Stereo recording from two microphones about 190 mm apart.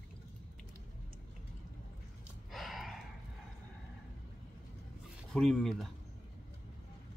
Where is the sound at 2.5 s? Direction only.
Centre (ahead or behind).